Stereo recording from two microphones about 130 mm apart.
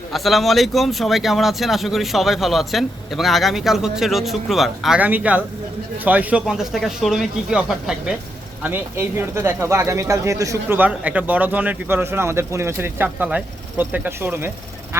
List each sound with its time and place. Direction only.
0.1 s speech: centre (ahead or behind)
4.9 s a man's voice: 10° right (ahead or behind)
6.4 s speech: centre (ahead or behind)
8.6 s speech: 15° right (ahead or behind)
10.8 s a man's voice: 10° right (ahead or behind)